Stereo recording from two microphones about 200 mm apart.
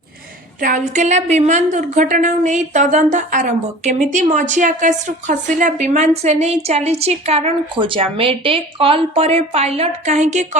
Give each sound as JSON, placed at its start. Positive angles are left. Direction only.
{"t": 0.6, "sound": "a woman's voice", "side_deg": -40}